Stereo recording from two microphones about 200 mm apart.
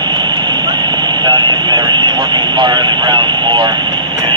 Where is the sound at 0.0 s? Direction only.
20° right (ahead or behind).